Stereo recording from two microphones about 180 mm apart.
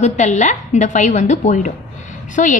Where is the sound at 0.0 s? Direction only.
40° left (ahead or behind).